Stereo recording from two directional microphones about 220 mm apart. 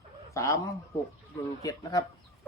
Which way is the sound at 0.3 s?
15° left (ahead or behind).